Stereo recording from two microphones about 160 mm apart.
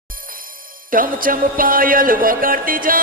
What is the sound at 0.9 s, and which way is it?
Speech, 60° right (ahead or behind).